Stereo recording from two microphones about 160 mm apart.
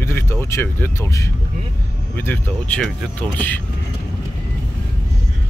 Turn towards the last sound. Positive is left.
turn(degrees=10)  # may be behind; listen again after turning